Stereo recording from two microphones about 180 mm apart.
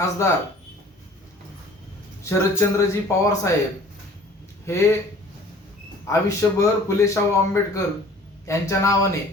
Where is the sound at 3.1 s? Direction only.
15° left (ahead or behind).